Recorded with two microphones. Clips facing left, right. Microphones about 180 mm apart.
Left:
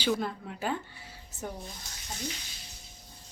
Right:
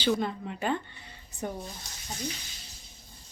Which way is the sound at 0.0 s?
5° left (ahead or behind).